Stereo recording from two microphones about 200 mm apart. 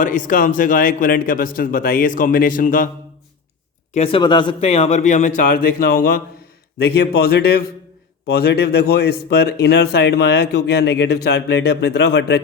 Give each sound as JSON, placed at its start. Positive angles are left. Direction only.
{"t": 0.0, "sound": "a man's voice", "side_deg": 40}
{"t": 3.9, "sound": "a man's voice", "side_deg": 30}